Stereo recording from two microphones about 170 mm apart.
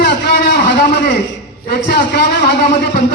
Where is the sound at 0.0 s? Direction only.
70° left (ahead or behind).